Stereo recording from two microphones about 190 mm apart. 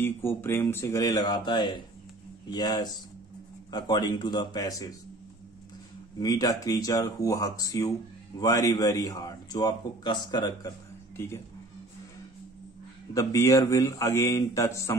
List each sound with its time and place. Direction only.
0.0 s a man's voice: 10° left (ahead or behind)
6.1 s a man's voice: 20° left (ahead or behind)
13.1 s speech: 15° left (ahead or behind)